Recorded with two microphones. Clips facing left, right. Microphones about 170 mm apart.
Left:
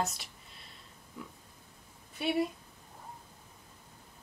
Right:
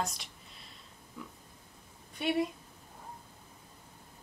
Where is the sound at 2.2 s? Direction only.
Centre (ahead or behind).